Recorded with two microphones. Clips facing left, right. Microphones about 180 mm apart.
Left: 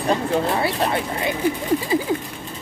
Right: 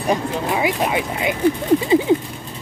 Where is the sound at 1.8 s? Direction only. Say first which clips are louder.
Right 6 dB; 25° right (ahead or behind).